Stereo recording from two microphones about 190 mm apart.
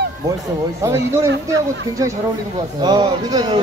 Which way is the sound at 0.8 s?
15° right (ahead or behind).